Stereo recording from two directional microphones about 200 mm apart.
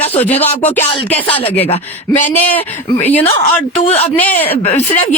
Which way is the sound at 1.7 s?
35° left (ahead or behind).